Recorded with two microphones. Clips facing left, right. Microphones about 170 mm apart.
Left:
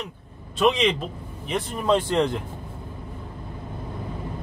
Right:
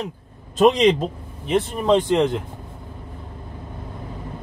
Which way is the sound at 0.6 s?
40° right (ahead or behind).